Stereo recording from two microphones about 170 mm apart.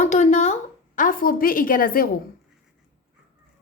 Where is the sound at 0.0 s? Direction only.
45° left (ahead or behind).